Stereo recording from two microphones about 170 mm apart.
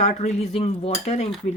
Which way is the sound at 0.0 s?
40° left (ahead or behind).